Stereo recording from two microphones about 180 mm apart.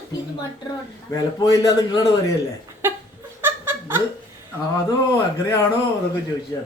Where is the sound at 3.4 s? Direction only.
15° right (ahead or behind).